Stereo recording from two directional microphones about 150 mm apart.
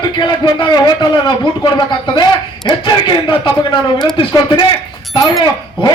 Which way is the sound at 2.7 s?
30° left (ahead or behind).